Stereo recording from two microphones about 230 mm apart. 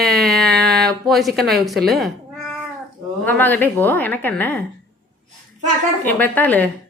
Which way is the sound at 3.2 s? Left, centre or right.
Centre.